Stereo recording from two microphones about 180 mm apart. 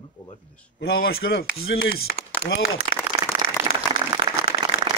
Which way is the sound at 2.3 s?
60° left (ahead or behind).